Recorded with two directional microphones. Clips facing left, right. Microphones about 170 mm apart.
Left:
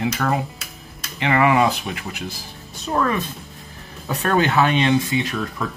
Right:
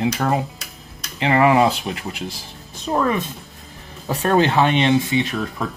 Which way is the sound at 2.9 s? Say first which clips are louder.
Right 1 dB; 20° right (ahead or behind).